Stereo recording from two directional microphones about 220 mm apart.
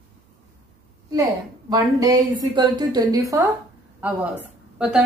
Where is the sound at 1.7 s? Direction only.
15° right (ahead or behind).